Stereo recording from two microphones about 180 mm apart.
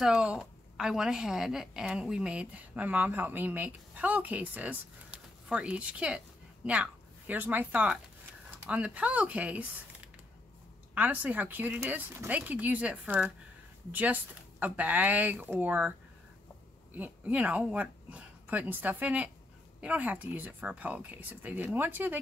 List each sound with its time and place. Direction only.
0.0 s a woman's voice: 5° right (ahead or behind)
16.9 s speech: 10° right (ahead or behind)